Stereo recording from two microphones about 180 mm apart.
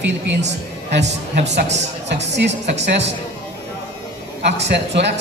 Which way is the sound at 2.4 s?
70° right (ahead or behind).